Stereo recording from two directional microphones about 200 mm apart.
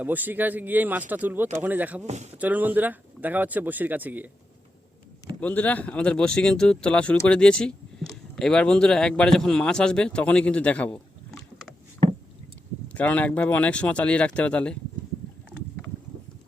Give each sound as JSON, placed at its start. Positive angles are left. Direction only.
{"t": 0.0, "sound": "speech", "side_deg": -10}
{"t": 2.0, "sound": "speech", "side_deg": -35}
{"t": 2.3, "sound": "speech", "side_deg": -10}
{"t": 5.4, "sound": "speech", "side_deg": 5}
{"t": 12.9, "sound": "speech", "side_deg": 5}